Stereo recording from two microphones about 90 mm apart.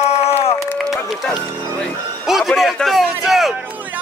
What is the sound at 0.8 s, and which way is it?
Music, centre (ahead or behind).